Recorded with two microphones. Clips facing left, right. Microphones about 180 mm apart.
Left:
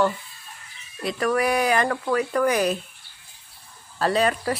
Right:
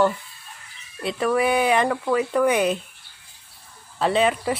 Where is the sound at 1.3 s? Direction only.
25° right (ahead or behind).